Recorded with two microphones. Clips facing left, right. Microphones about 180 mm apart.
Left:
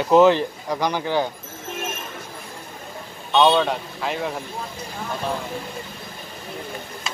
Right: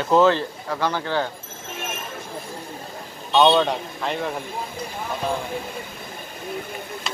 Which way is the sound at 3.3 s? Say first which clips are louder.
Even; centre (ahead or behind).